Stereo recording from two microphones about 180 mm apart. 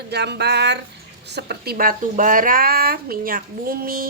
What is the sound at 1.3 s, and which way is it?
Speech, 65° right (ahead or behind).